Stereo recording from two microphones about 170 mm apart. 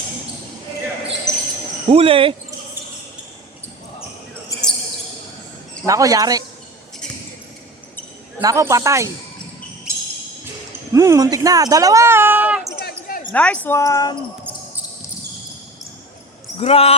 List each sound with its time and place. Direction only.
1.3 s basketball bounce: 5° left (ahead or behind)
1.9 s speech: 30° right (ahead or behind)
5.8 s speech: 20° right (ahead or behind)
8.4 s speech: 20° right (ahead or behind)
10.9 s speech: 20° right (ahead or behind)
12.8 s basketball bounce: 60° left (ahead or behind)
13.3 s speech: 10° left (ahead or behind)
16.6 s speech: 35° left (ahead or behind)